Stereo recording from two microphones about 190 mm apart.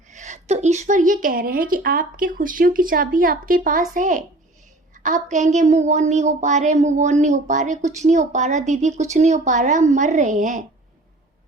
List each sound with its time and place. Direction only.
0.1 s a woman's voice: 40° right (ahead or behind)